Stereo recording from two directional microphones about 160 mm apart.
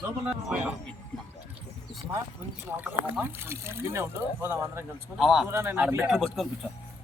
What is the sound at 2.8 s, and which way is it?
Speech, 10° right (ahead or behind).